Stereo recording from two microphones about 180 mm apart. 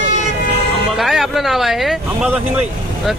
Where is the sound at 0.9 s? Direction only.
Centre (ahead or behind).